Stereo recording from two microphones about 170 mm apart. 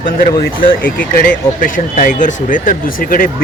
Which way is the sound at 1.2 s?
55° left (ahead or behind).